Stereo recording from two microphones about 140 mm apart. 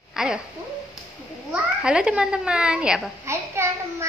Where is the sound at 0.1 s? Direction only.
5° right (ahead or behind).